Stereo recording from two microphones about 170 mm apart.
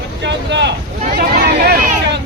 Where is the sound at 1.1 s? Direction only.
65° right (ahead or behind).